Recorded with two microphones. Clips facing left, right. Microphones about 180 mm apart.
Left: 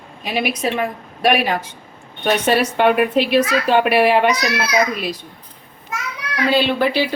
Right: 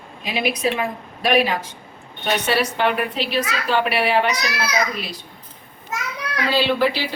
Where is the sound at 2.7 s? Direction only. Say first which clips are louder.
Left 6 dB; 55° left (ahead or behind).